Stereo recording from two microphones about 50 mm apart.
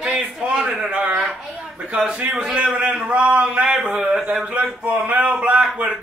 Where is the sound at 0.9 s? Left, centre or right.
Right.